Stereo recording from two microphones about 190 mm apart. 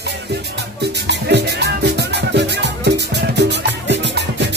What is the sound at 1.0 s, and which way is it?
Music, 60° right (ahead or behind).